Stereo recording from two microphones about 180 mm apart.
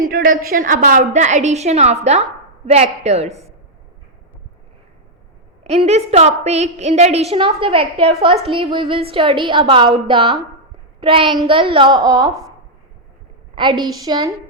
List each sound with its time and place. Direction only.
0.1 s a woman's voice: 50° right (ahead or behind)
5.6 s a woman's voice: 35° right (ahead or behind); by 12.3 s 20° right (ahead or behind)
13.6 s a woman's voice: 25° right (ahead or behind)